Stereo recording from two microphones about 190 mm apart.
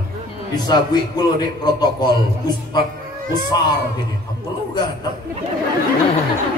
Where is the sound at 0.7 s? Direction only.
20° left (ahead or behind).